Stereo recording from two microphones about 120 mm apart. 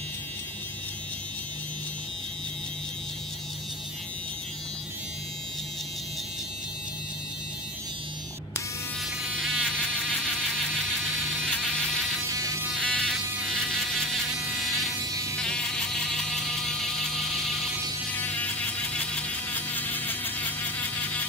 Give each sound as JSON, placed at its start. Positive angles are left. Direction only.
{"t": 9.2, "sound": "insect", "side_deg": 0}
{"t": 12.3, "sound": "buzz", "side_deg": -25}
{"t": 12.8, "sound": "electric shaver", "side_deg": 10}
{"t": 13.5, "sound": "electric toothbrush", "side_deg": 5}
{"t": 15.4, "sound": "vehicle", "side_deg": 5}
{"t": 18.1, "sound": "vehicle", "side_deg": 15}